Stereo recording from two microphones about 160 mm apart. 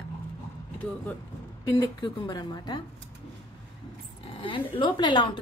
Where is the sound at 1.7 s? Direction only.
30° left (ahead or behind).